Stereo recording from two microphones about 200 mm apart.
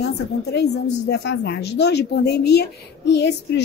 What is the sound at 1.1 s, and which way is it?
A woman's voice, 60° left (ahead or behind).